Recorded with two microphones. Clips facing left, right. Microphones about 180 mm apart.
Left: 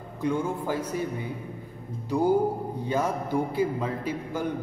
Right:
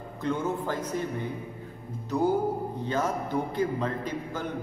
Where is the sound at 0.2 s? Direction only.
10° left (ahead or behind).